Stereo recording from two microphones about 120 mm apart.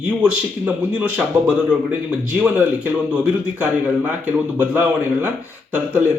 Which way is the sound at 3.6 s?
15° right (ahead or behind).